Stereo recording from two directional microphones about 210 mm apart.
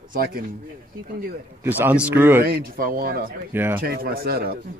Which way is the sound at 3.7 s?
45° right (ahead or behind).